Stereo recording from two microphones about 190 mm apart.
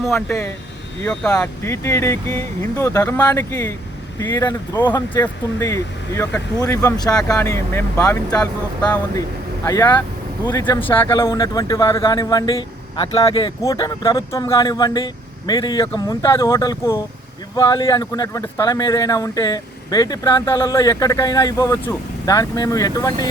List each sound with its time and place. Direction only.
0.1 s speech: 10° left (ahead or behind)